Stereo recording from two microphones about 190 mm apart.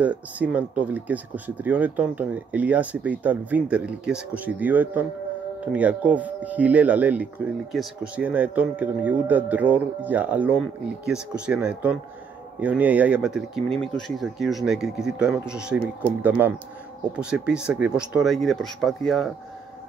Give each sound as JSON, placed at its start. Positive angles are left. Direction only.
{"t": 0.0, "sound": "speech", "side_deg": -5}